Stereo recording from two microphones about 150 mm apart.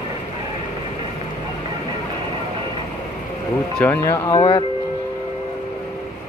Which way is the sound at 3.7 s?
10° left (ahead or behind).